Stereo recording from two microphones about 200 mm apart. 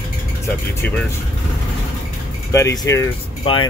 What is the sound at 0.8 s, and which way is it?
Speech, 10° left (ahead or behind).